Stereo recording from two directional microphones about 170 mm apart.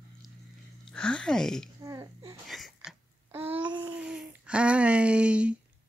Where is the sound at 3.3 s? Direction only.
10° right (ahead or behind).